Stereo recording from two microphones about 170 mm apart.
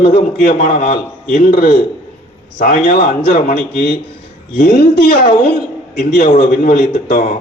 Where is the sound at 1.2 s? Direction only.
55° left (ahead or behind).